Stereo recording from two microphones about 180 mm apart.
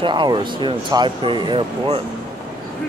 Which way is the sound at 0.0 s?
25° right (ahead or behind).